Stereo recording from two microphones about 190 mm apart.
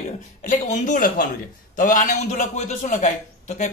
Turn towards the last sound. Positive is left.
turn(degrees=40)  # may be behind; listen again after turning